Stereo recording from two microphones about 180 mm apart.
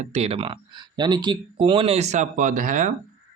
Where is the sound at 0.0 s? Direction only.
35° right (ahead or behind).